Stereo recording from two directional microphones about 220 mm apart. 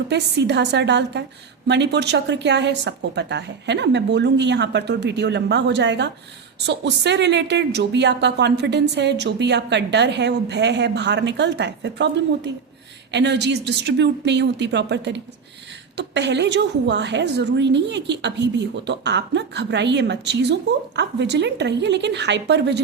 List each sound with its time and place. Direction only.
0.1 s a woman's voice: 50° right (ahead or behind)